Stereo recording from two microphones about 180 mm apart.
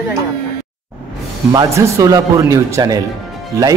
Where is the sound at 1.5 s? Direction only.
20° right (ahead or behind).